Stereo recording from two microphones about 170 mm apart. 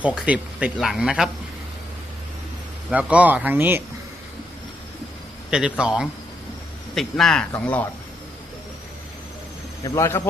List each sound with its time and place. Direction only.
0.0 s speech: 5° right (ahead or behind)
2.9 s speech: 10° right (ahead or behind)
5.5 s speech: 5° right (ahead or behind)
9.8 s speech: 15° left (ahead or behind)